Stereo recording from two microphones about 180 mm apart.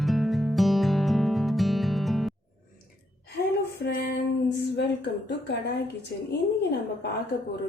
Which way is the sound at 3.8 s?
65° left (ahead or behind).